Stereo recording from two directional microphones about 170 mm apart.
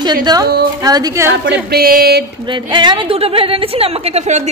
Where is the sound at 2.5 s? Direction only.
30° right (ahead or behind).